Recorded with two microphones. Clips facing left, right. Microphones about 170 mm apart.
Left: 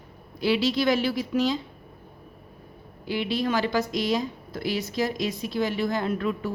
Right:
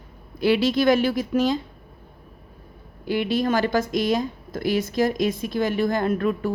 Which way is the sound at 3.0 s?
50° right (ahead or behind).